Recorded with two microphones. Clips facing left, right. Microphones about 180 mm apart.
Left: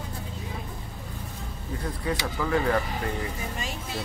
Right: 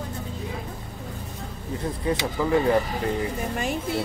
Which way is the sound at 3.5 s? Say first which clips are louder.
Right 8 dB; 55° right (ahead or behind).